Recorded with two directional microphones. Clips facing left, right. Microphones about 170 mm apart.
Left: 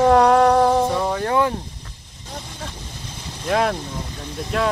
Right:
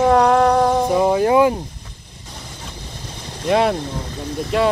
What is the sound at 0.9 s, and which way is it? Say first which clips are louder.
Speech: right 6 dB; 15° right (ahead or behind).